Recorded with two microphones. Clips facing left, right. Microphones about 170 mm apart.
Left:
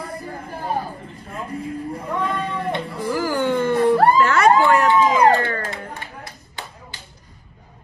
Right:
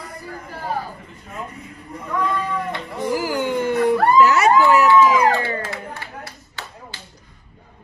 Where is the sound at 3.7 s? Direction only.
30° left (ahead or behind).